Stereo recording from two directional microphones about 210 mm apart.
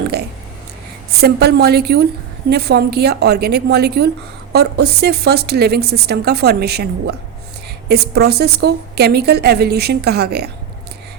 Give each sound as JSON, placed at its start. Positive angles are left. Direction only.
{"t": 1.2, "sound": "a woman's voice", "side_deg": -50}
{"t": 7.9, "sound": "a woman's voice", "side_deg": -50}